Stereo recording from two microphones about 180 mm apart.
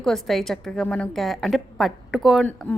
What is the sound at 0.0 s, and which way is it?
A woman's voice, centre (ahead or behind).